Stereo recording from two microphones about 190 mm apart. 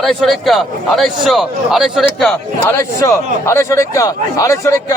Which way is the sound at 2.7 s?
15° left (ahead or behind).